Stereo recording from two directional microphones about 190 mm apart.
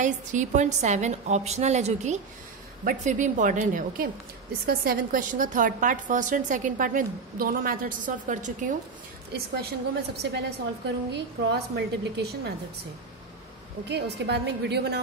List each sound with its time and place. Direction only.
0.0 s a woman's voice: 40° right (ahead or behind)
9.3 s a woman's voice: 55° right (ahead or behind)
13.8 s a woman's voice: 60° right (ahead or behind)